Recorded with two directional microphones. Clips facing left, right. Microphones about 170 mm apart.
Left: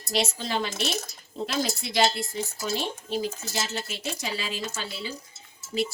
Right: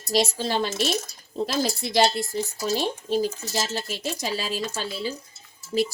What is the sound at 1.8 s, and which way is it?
Speech, 40° right (ahead or behind).